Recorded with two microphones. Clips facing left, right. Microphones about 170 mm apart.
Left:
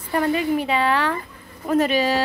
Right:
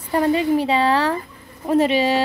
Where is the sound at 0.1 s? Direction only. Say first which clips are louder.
Right 3 dB; 25° right (ahead or behind).